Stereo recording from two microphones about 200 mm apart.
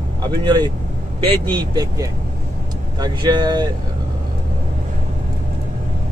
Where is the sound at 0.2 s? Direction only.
20° right (ahead or behind).